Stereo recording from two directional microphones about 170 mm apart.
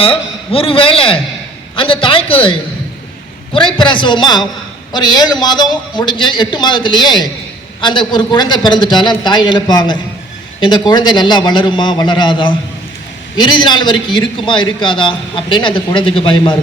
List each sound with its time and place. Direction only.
0.0 s a man's voice: 35° left (ahead or behind)